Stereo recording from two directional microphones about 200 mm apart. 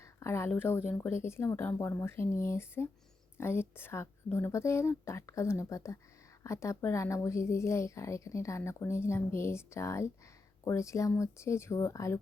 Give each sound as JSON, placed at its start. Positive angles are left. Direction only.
{"t": 0.0, "sound": "a woman's voice", "side_deg": 15}